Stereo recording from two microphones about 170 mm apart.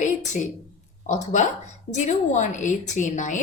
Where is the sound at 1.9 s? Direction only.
45° left (ahead or behind).